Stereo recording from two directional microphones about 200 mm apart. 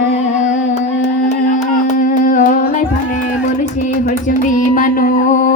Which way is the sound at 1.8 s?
40° left (ahead or behind).